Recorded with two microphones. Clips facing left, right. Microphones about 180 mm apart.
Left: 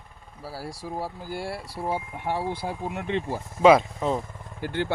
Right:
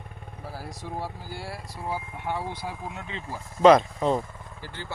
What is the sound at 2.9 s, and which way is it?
Speech, 65° left (ahead or behind).